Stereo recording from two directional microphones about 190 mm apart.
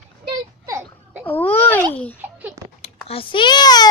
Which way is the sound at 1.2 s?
10° left (ahead or behind).